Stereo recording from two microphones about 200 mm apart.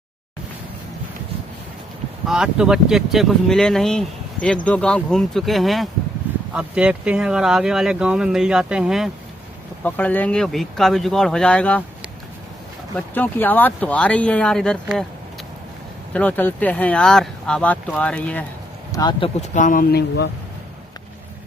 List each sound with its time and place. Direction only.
2.2 s speech: 5° right (ahead or behind)
9.8 s speech: 10° left (ahead or behind)
12.9 s speech: 10° left (ahead or behind)
16.1 s speech: 10° left (ahead or behind)
18.9 s speech: 20° left (ahead or behind)
19.5 s speech: 40° left (ahead or behind)